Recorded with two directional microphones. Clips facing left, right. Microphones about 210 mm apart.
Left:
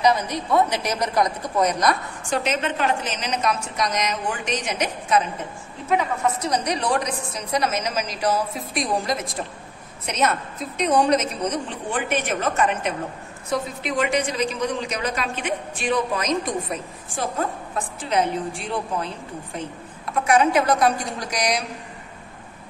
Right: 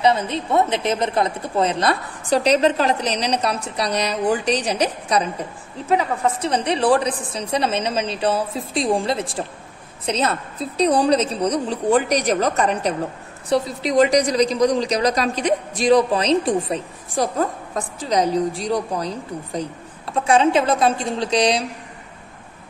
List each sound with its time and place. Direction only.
0.0 s a woman's voice: 25° right (ahead or behind)
20.2 s a woman's voice: 25° right (ahead or behind)